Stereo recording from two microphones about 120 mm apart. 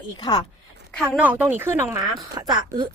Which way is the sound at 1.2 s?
15° right (ahead or behind).